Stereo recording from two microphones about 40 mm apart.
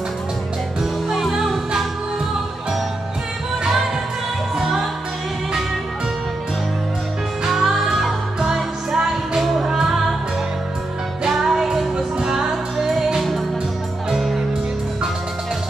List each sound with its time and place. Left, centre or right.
1.3 s music: centre
3.6 s music: centre
7.4 s music: centre
9.4 s music: centre
9.7 s music: centre
11.3 s music: centre